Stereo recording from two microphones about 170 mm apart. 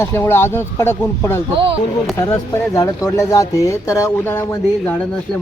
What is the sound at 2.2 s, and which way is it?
Speech, 15° left (ahead or behind).